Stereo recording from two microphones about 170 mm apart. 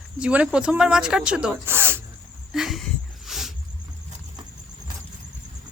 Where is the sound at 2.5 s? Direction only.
Centre (ahead or behind).